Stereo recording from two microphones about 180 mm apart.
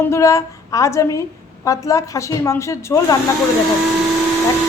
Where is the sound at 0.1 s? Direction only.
15° left (ahead or behind).